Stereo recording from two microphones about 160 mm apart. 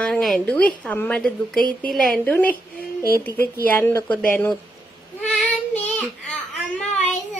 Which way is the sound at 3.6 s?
15° left (ahead or behind).